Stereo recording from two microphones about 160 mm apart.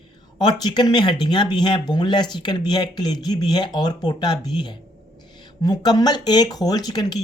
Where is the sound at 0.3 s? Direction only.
25° left (ahead or behind).